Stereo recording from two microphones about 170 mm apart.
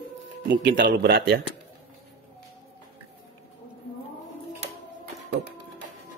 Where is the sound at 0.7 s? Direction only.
55° right (ahead or behind).